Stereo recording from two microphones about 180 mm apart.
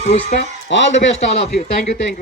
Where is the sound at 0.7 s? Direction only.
90° left.